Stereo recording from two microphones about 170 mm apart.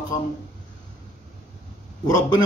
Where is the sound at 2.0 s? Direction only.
25° left (ahead or behind).